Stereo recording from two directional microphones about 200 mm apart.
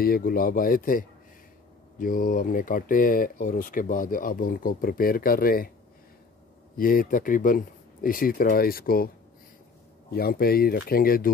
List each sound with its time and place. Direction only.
0.0 s speech: 45° left (ahead or behind)
6.8 s speech: 45° left (ahead or behind)
10.1 s speech: 50° left (ahead or behind)